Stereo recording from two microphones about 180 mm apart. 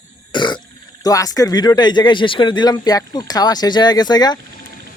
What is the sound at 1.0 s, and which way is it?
Speech, 20° left (ahead or behind).